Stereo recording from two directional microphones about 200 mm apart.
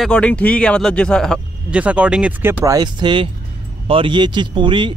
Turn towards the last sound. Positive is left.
turn(degrees=-25)  # may be behind; listen again after turning